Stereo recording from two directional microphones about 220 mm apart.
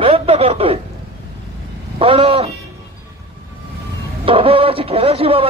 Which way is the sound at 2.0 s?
25° right (ahead or behind).